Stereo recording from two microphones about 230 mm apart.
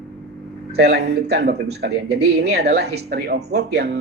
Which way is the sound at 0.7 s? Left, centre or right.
Right.